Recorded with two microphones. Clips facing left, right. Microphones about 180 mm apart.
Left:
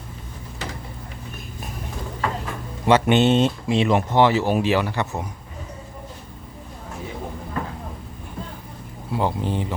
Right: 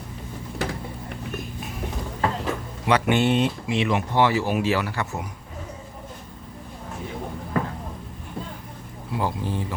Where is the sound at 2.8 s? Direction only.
25° left (ahead or behind).